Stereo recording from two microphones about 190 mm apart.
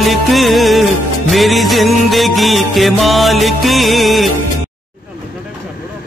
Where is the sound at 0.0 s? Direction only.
Centre (ahead or behind).